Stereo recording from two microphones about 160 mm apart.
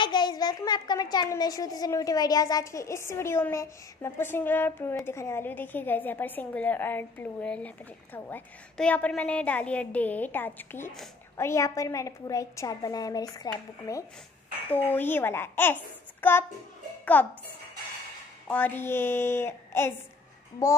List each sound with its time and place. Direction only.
0.0 s a child's voice: 25° left (ahead or behind); by 17.3 s 10° left (ahead or behind)
18.5 s a woman's voice: 10° left (ahead or behind)